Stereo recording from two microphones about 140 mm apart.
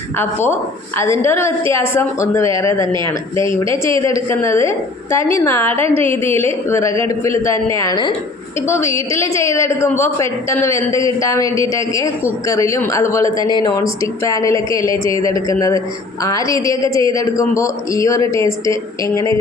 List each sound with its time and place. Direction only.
0.4 s speech: 20° left (ahead or behind)
2.8 s speech: 35° right (ahead or behind)
3.1 s speech: 20° left (ahead or behind)
5.7 s a woman's voice: 45° right (ahead or behind)
6.0 s a woman's voice: 20° left (ahead or behind)
13.5 s speech: 30° left (ahead or behind)